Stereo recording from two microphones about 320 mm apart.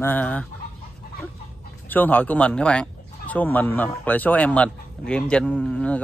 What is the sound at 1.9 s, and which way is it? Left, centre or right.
Speech, centre.